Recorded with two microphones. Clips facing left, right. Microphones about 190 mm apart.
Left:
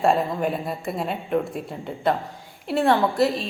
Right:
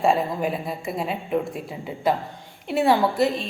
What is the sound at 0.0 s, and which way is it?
A woman's voice, centre (ahead or behind).